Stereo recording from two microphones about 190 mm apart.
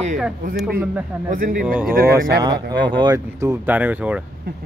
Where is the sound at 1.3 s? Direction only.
45° right (ahead or behind).